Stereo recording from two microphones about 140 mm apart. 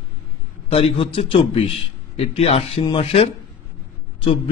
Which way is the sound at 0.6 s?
45° left (ahead or behind).